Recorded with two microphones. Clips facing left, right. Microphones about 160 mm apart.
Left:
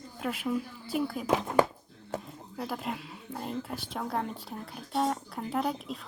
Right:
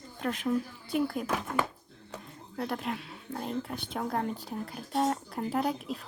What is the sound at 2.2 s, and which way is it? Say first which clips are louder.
Speech: right 2 dB; centre (ahead or behind).